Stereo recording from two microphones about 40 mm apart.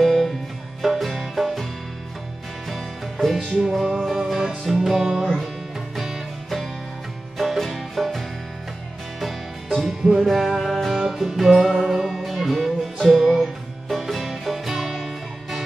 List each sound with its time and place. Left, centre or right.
0.0 s music: centre
2.7 s music: centre
9.8 s music: centre